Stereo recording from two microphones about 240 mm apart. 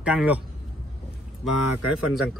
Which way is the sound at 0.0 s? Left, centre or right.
Centre.